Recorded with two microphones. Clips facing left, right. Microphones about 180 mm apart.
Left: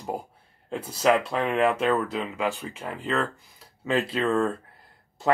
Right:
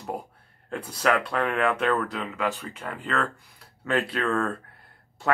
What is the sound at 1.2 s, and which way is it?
Speech, centre (ahead or behind).